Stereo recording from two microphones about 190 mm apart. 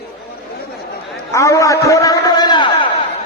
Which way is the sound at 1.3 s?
15° left (ahead or behind).